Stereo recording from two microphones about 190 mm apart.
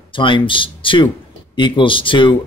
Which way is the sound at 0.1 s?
25° left (ahead or behind).